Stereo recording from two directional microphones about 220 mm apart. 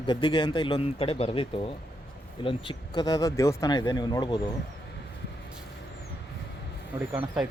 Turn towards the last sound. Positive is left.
turn(degrees=-5)  # may be behind; listen again after turning